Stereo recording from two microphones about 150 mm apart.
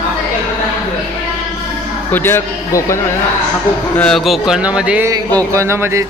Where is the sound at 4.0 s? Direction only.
Centre (ahead or behind).